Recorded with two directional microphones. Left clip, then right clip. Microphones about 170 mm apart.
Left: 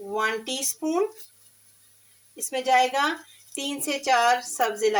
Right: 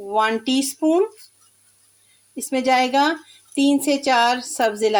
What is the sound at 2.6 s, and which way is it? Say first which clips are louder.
A woman's voice: right 4 dB; 60° right (ahead or behind).